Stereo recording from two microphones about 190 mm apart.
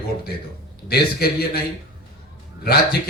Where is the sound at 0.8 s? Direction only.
55° left (ahead or behind).